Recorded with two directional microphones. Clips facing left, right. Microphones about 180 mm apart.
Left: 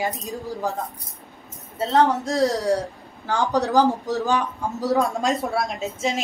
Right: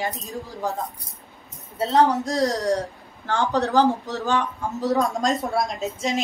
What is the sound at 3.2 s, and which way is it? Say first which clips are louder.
A woman's voice: left 1 dB; 10° left (ahead or behind).